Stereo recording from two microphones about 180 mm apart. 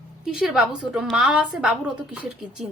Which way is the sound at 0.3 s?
5° right (ahead or behind).